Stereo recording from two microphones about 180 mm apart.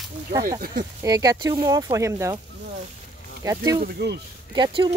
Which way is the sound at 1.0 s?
20° right (ahead or behind).